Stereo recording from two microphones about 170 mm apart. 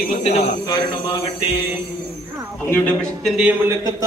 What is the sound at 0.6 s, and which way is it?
Speech, 30° left (ahead or behind).